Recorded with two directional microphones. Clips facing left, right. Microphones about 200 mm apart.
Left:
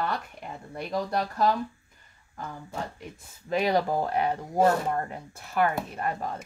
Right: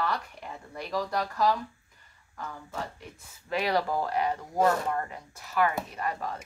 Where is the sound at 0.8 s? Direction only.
25° left (ahead or behind).